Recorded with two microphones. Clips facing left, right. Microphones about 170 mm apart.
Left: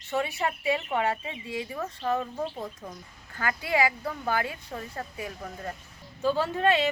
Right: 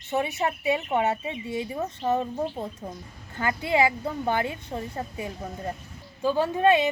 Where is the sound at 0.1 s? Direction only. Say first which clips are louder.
Right 2 dB; 20° right (ahead or behind).